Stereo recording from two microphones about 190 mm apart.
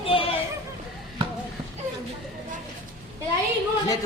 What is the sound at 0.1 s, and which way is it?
Children playing, 30° left (ahead or behind).